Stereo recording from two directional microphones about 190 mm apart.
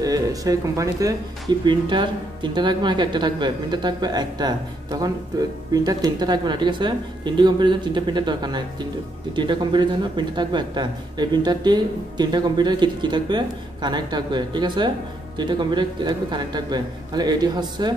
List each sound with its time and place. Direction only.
0.0 s speech: 20° right (ahead or behind)